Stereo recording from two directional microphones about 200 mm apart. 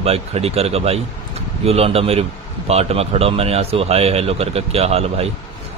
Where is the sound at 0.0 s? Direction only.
30° right (ahead or behind).